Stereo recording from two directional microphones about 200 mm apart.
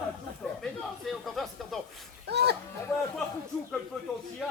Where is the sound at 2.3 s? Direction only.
55° right (ahead or behind).